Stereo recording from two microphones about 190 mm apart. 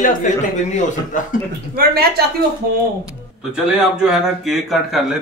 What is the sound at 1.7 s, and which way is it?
Speech, 55° right (ahead or behind).